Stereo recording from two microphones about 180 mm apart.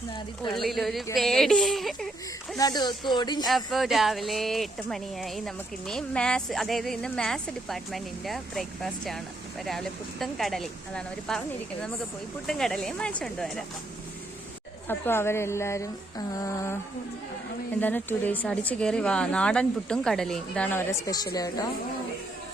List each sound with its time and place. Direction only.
0.6 s speech: centre (ahead or behind)
2.6 s a woman's voice: 20° left (ahead or behind)
3.4 s speech: centre (ahead or behind)
14.8 s speech: 10° left (ahead or behind)
17.7 s a woman's voice: 10° left (ahead or behind)